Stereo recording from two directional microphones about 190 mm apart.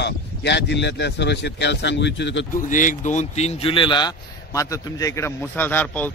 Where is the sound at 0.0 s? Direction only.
65° left (ahead or behind).